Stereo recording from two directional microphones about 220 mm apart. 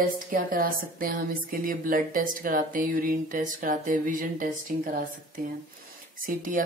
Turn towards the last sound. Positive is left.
turn(degrees=-35)  # may be behind; listen again after turning